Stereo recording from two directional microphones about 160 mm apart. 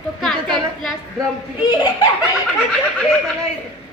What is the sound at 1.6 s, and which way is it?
Speech, 25° left (ahead or behind).